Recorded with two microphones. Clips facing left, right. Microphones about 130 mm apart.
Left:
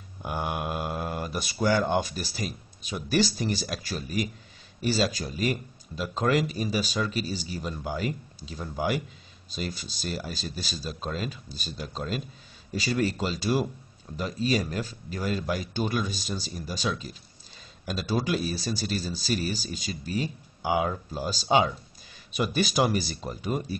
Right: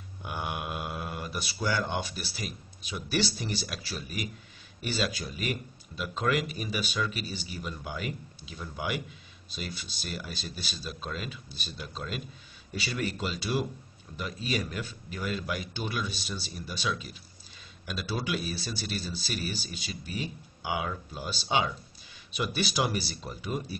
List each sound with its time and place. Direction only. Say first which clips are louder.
0.2 s speech: left 4 dB; 45° left (ahead or behind)